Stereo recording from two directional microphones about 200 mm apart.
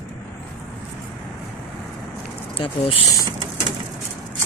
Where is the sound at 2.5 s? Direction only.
25° left (ahead or behind).